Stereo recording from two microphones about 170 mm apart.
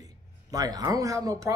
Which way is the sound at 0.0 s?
20° right (ahead or behind).